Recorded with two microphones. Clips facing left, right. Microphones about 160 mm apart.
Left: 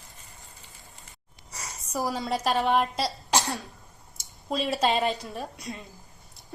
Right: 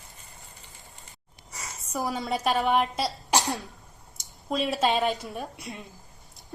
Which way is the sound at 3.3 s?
20° right (ahead or behind).